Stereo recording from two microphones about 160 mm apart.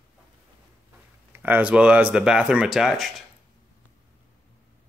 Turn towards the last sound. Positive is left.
turn(degrees=0)  # may be behind; listen again after turning